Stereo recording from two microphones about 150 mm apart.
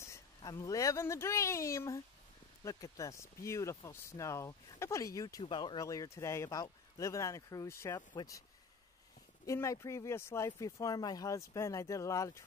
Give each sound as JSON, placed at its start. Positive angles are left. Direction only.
{"t": 0.0, "sound": "speech", "side_deg": 25}
{"t": 9.5, "sound": "speech", "side_deg": 20}